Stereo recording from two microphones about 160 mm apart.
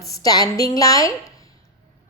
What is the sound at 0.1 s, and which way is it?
A woman's voice, 25° left (ahead or behind).